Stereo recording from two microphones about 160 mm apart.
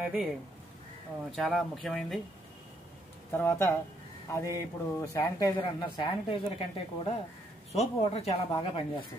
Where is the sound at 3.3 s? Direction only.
15° left (ahead or behind).